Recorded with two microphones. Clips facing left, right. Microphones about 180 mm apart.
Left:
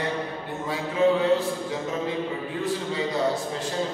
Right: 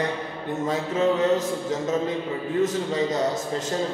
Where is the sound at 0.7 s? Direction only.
40° right (ahead or behind).